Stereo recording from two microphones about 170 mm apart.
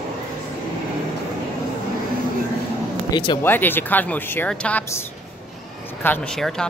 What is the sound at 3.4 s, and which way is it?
Speech, 10° left (ahead or behind).